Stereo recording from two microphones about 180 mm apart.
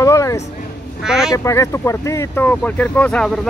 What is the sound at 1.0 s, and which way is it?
Speech, 5° right (ahead or behind).